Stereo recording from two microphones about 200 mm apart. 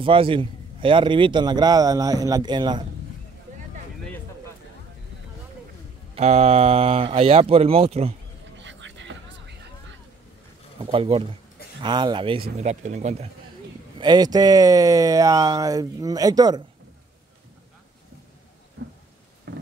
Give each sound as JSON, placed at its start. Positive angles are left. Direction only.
{"t": 0.0, "sound": "a man's voice", "side_deg": -25}
{"t": 6.1, "sound": "a man's voice", "side_deg": -35}
{"t": 8.5, "sound": "a sound", "side_deg": -65}
{"t": 10.8, "sound": "a man's voice", "side_deg": -30}
{"t": 13.9, "sound": "speech", "side_deg": -20}
{"t": 18.8, "sound": "a sound", "side_deg": -60}